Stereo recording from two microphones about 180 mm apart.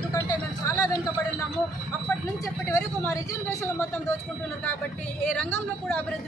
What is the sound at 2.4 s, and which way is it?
Speech, 15° left (ahead or behind).